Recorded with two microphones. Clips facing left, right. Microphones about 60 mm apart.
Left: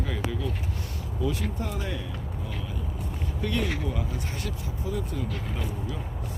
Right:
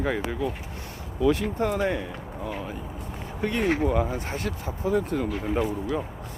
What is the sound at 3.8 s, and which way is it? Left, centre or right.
Speech, right.